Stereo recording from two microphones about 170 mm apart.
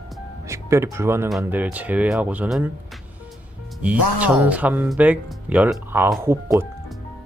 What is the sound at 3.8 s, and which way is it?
Speech, 10° right (ahead or behind).